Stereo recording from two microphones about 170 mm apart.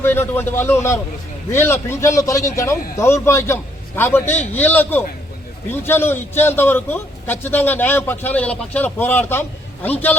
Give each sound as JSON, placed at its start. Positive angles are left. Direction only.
{"t": 0.0, "sound": "a man's voice", "side_deg": 15}